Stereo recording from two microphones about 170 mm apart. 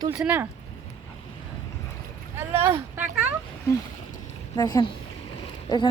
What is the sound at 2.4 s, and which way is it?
Speech, 15° right (ahead or behind).